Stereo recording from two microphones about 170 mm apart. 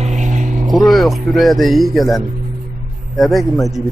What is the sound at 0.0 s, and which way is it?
Vehicle, 45° right (ahead or behind).